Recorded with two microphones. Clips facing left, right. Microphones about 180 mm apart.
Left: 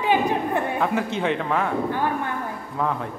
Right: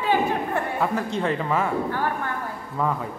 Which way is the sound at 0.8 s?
Centre (ahead or behind).